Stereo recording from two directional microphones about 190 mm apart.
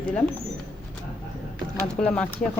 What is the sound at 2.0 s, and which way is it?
Speech, 5° left (ahead or behind).